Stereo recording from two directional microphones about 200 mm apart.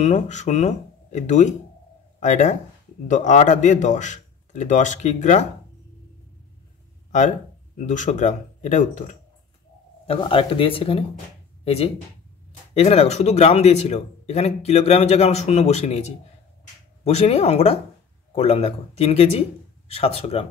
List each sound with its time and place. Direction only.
0.0 s a man's voice: 35° left (ahead or behind)
7.1 s speech: 40° left (ahead or behind)
10.0 s a man's voice: 25° left (ahead or behind)
17.0 s a man's voice: 30° left (ahead or behind)